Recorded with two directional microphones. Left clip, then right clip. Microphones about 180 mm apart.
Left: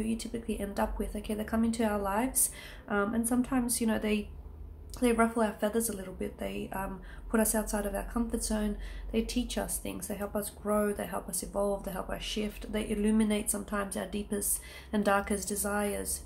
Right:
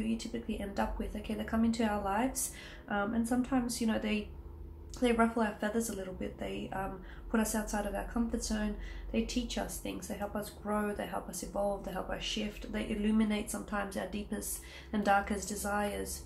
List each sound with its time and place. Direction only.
0.0 s a woman's voice: 30° left (ahead or behind)